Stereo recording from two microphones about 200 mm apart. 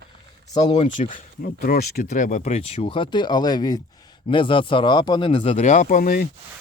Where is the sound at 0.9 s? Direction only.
40° left (ahead or behind).